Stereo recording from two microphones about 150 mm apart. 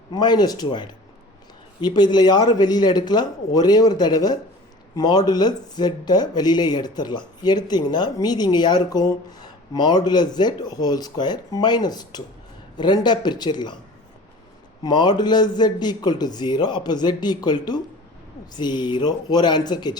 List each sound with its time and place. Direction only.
0.1 s speech: 30° left (ahead or behind)
14.8 s speech: 30° left (ahead or behind)